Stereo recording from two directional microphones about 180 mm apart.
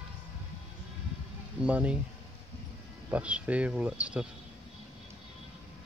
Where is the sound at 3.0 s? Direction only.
5° right (ahead or behind).